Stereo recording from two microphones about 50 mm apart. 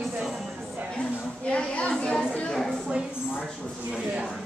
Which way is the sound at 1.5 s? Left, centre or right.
Left.